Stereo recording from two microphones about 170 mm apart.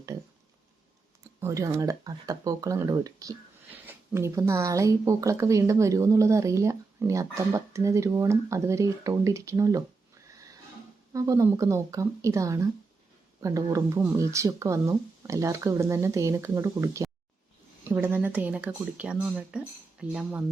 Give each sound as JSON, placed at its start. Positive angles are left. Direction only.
{"t": 1.4, "sound": "a woman's voice", "side_deg": -15}
{"t": 11.1, "sound": "a woman's voice", "side_deg": -20}